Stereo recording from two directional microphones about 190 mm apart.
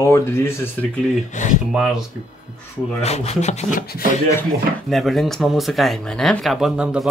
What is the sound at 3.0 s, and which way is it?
Speech, 35° left (ahead or behind).